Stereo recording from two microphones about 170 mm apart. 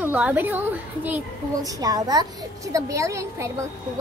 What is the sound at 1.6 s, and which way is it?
A woman's voice, 20° right (ahead or behind).